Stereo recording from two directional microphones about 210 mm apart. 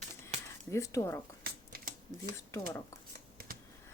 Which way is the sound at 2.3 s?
15° left (ahead or behind).